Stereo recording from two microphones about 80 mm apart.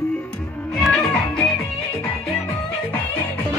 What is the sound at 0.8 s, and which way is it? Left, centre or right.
Music, centre.